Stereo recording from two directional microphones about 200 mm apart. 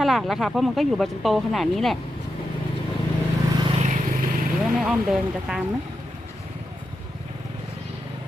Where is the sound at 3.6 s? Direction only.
35° right (ahead or behind).